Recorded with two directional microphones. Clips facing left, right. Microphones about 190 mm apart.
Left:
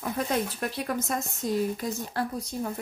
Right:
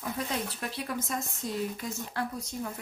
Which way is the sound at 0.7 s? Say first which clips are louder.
Left 3 dB; 50° left (ahead or behind).